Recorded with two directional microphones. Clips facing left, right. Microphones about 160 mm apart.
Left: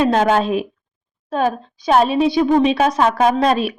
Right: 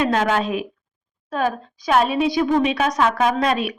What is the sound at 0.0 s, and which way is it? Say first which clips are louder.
A woman's voice: left 4 dB; 30° left (ahead or behind).